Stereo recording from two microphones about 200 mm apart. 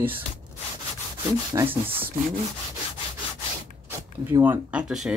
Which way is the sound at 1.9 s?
10° right (ahead or behind).